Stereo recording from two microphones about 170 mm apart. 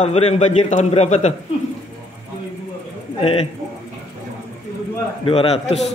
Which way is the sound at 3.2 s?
35° left (ahead or behind).